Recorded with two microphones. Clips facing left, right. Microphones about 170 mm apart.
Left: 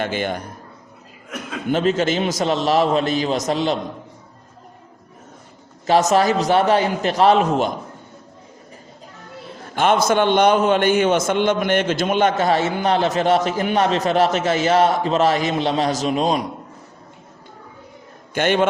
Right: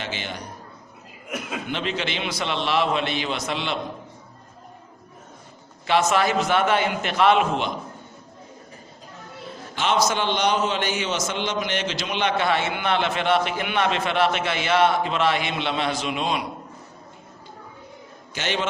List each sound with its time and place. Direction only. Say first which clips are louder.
0.0 s a man's voice: left 9 dB; 50° left (ahead or behind)
1.7 s a man's voice: left 11 dB; 45° left (ahead or behind)
5.8 s a man's voice: left 5 dB; 40° left (ahead or behind)
9.7 s a man's voice: left 6 dB; 55° left (ahead or behind)
18.3 s a man's voice: left 9 dB; 55° left (ahead or behind)